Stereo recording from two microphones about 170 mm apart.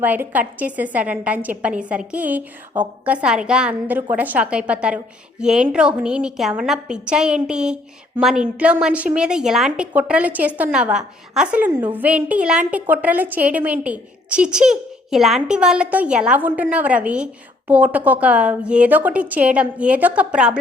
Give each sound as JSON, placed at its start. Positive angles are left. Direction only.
{"t": 0.0, "sound": "a woman's voice", "side_deg": -10}